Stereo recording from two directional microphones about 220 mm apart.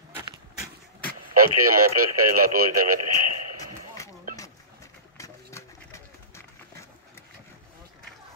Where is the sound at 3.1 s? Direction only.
90° right.